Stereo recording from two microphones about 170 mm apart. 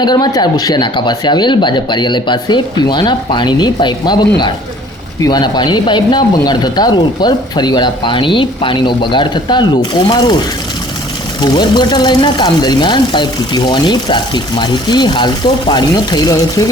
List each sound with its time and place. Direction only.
0.0 s speech: 25° left (ahead or behind)
11.3 s speech: 25° left (ahead or behind)